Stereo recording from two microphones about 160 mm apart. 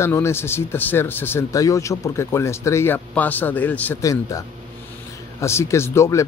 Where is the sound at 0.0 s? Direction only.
15° left (ahead or behind).